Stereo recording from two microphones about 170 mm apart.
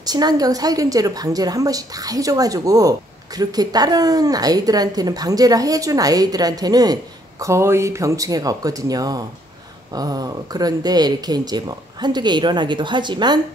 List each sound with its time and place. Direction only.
0.0 s a woman's voice: 25° right (ahead or behind)